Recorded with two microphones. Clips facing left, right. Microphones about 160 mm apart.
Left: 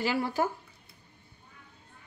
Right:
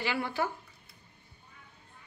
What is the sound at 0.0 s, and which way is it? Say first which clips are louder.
Speech: left 3 dB; 40° left (ahead or behind).